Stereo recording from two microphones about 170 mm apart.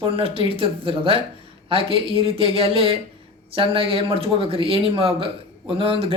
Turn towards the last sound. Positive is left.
turn(degrees=-35)  # may be behind; listen again after turning